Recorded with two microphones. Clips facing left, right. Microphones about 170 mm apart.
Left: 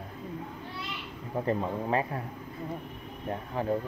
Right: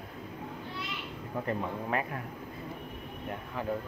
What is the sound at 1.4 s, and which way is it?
Speech, 30° left (ahead or behind).